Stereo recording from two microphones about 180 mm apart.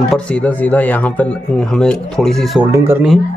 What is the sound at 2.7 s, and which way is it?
Speech, 15° right (ahead or behind).